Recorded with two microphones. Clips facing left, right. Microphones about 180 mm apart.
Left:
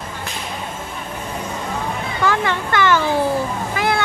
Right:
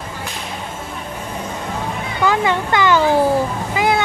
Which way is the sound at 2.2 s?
15° right (ahead or behind).